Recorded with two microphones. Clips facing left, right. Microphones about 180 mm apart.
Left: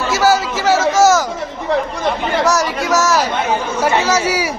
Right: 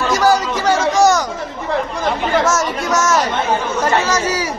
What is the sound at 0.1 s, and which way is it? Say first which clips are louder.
Chatter: left 1 dB; 5° left (ahead or behind).